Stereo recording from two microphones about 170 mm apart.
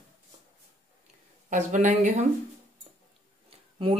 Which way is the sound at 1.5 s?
45° right (ahead or behind).